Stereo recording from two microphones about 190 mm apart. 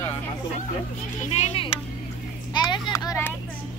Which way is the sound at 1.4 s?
30° left (ahead or behind).